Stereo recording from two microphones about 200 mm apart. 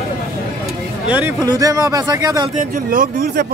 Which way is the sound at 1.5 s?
15° right (ahead or behind).